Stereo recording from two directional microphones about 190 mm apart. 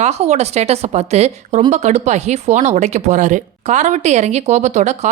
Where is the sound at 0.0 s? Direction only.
35° right (ahead or behind).